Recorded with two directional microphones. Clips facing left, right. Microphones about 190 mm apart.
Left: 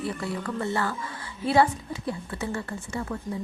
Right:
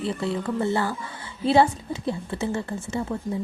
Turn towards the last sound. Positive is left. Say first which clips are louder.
# right 4 dB
turn(degrees=-25)  # may be behind; listen again after turning